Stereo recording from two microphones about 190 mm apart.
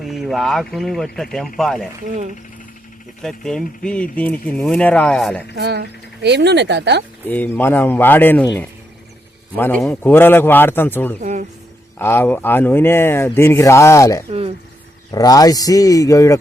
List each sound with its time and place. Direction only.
0.0 s speech: centre (ahead or behind)
3.2 s speech: 5° left (ahead or behind)
5.5 s speech: 60° right (ahead or behind)
7.3 s speech: 10° left (ahead or behind)
9.6 s speech: 10° left (ahead or behind)
11.2 s speech: 40° right (ahead or behind)
11.9 s speech: 10° left (ahead or behind)
14.3 s speech: 30° right (ahead or behind)
15.1 s speech: 20° left (ahead or behind)